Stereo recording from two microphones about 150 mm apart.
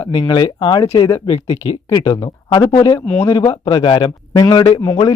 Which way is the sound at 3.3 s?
30° left (ahead or behind).